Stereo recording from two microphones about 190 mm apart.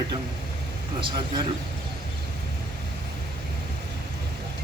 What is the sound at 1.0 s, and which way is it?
Speech, 25° right (ahead or behind).